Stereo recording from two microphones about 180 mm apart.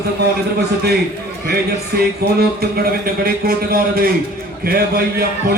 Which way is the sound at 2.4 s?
60° right (ahead or behind).